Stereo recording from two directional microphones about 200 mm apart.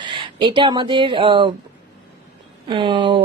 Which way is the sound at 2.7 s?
25° right (ahead or behind).